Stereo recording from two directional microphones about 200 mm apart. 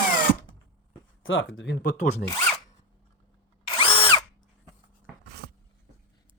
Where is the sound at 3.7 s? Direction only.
25° left (ahead or behind).